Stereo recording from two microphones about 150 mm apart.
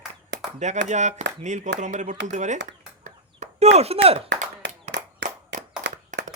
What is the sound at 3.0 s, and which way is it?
Chop, 50° right (ahead or behind).